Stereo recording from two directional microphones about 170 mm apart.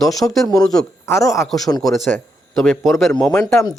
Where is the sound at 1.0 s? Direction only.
15° left (ahead or behind).